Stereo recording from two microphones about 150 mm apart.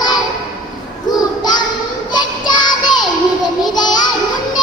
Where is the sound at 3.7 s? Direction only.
30° left (ahead or behind).